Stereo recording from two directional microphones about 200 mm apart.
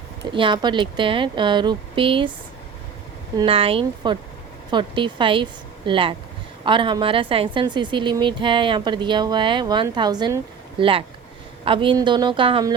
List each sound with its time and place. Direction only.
0.3 s a woman's voice: 25° right (ahead or behind)
3.3 s a woman's voice: 25° right (ahead or behind)